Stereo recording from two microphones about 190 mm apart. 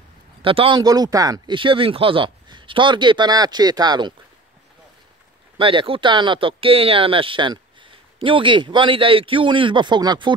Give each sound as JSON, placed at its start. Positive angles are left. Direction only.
{"t": 0.4, "sound": "speech", "side_deg": -30}
{"t": 5.6, "sound": "speech", "side_deg": -25}